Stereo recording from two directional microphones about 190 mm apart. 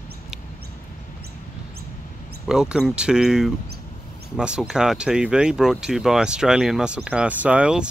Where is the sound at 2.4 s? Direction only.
5° right (ahead or behind).